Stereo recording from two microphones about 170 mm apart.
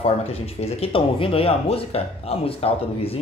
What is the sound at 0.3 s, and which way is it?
Speech, 35° left (ahead or behind).